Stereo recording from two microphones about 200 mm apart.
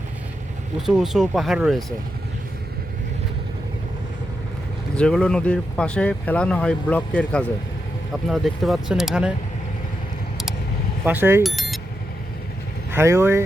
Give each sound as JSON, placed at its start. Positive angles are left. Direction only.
{"t": 0.8, "sound": "speech", "side_deg": 0}
{"t": 4.9, "sound": "speech", "side_deg": 5}
{"t": 11.0, "sound": "speech", "side_deg": -10}
{"t": 11.4, "sound": "vehicle", "side_deg": 0}
{"t": 12.9, "sound": "speech", "side_deg": -15}